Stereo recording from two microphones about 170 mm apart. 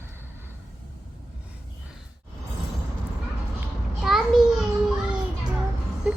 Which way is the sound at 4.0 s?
Centre (ahead or behind).